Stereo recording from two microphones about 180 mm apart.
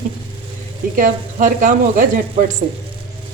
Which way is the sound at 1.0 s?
45° right (ahead or behind).